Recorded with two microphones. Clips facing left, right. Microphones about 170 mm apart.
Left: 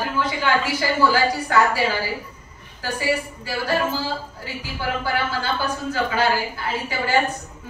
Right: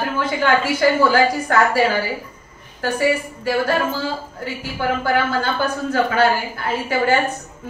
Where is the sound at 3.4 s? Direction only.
50° right (ahead or behind).